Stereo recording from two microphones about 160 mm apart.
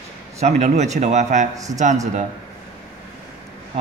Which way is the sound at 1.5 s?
20° right (ahead or behind).